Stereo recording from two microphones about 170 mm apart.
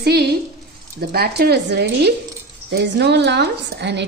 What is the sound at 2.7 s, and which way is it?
A woman's voice, 85° right.